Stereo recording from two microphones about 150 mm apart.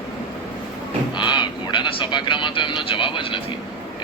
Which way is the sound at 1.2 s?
30° left (ahead or behind).